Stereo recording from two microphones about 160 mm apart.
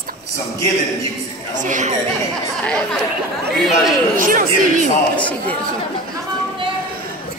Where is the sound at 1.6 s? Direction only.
50° right (ahead or behind).